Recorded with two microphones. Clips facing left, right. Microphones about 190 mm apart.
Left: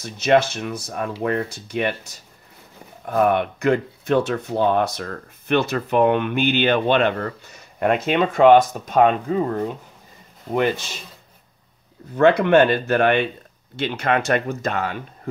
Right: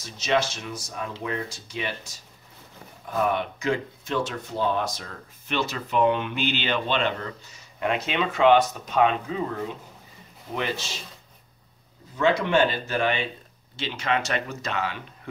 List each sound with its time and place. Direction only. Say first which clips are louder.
0.0 s speech: left 7 dB; 60° left (ahead or behind)
3.1 s speech: left 7 dB; 60° left (ahead or behind)
12.2 s speech: left 7 dB; 60° left (ahead or behind)